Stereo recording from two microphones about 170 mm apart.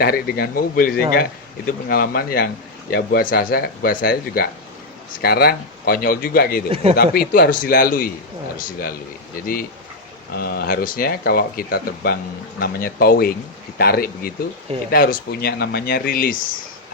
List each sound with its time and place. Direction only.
0.0 s speech: 65° left (ahead or behind)
10.3 s speech: 65° left (ahead or behind)